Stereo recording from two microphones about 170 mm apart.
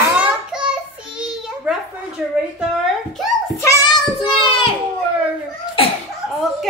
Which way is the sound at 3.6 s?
15° left (ahead or behind).